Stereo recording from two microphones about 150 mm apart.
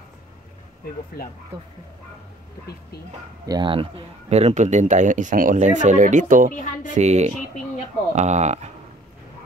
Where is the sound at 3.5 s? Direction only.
35° right (ahead or behind); by 6.5 s 60° right (ahead or behind).